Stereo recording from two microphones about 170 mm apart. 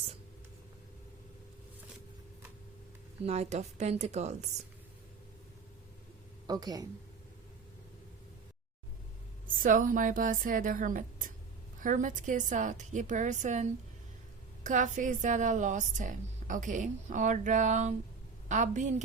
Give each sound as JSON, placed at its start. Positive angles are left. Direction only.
{"t": 3.2, "sound": "a woman's voice", "side_deg": -40}
{"t": 6.5, "sound": "speech", "side_deg": -20}
{"t": 9.6, "sound": "a woman's voice", "side_deg": -50}